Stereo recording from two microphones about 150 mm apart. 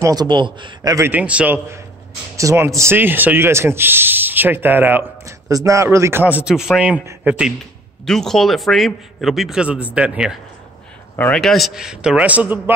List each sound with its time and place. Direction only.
0.0 s a man's voice: 25° right (ahead or behind)
0.9 s a man's voice: 15° right (ahead or behind)
11.1 s a man's voice: 10° left (ahead or behind); by 12.7 s 10° right (ahead or behind)